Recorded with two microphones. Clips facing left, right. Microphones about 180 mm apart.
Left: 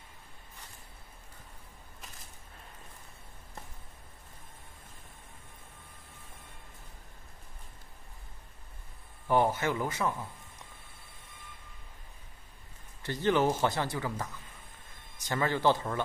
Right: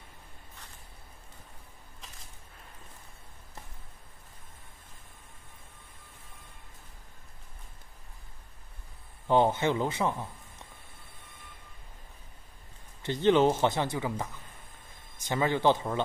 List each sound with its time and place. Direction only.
9.3 s a man's voice: 20° right (ahead or behind)
13.0 s a man's voice: 20° right (ahead or behind)